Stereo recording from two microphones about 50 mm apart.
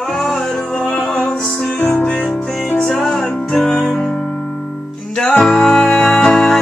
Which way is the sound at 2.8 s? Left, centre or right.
Centre.